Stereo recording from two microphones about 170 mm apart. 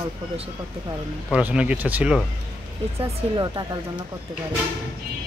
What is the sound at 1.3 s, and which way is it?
Speech, 5° right (ahead or behind).